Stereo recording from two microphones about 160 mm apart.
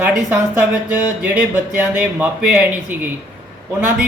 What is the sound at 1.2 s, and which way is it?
Speech, 10° right (ahead or behind).